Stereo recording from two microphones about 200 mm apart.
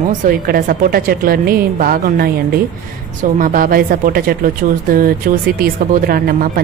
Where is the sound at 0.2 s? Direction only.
45° right (ahead or behind).